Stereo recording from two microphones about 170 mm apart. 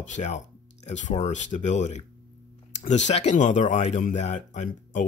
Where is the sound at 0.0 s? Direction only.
45° left (ahead or behind).